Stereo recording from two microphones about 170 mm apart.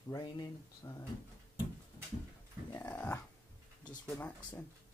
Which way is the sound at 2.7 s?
10° left (ahead or behind).